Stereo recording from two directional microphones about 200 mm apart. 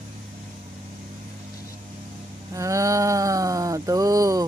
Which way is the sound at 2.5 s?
15° right (ahead or behind).